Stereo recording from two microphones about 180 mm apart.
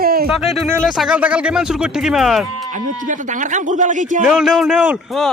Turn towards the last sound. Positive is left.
turn(degrees=-5)  # may be behind; listen again after turning